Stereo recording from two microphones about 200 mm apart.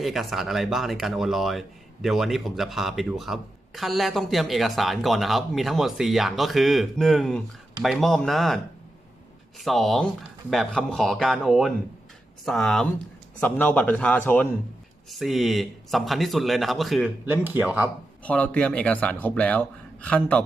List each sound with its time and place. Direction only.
0.0 s speech: centre (ahead or behind)
18.2 s speech: 5° left (ahead or behind)